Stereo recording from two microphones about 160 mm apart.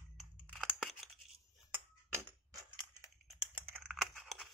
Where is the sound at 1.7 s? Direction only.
15° right (ahead or behind).